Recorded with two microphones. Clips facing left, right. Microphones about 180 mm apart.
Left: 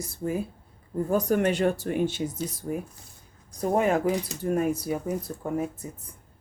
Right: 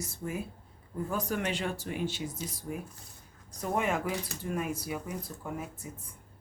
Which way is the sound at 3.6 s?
35° left (ahead or behind).